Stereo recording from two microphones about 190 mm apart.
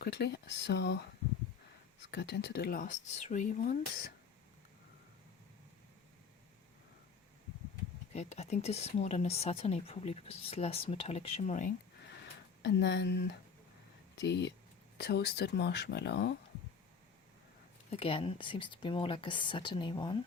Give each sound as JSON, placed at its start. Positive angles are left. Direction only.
{"t": 0.0, "sound": "speech", "side_deg": 60}
{"t": 2.0, "sound": "speech", "side_deg": 60}
{"t": 8.1, "sound": "speech", "side_deg": 35}
{"t": 12.6, "sound": "speech", "side_deg": 65}
{"t": 17.9, "sound": "speech", "side_deg": 30}